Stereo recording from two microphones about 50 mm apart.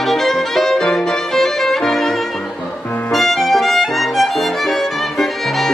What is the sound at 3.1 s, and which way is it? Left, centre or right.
Music, centre.